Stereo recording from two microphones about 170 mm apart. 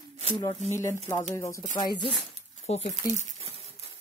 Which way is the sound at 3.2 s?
35° right (ahead or behind).